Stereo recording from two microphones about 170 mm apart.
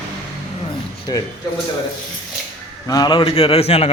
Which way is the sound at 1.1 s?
20° left (ahead or behind).